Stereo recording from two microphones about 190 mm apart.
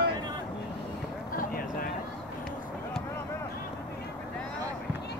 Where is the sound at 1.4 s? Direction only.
50° left (ahead or behind).